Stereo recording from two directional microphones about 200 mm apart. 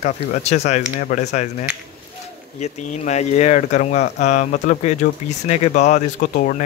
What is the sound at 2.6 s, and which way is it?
Speech, 35° left (ahead or behind).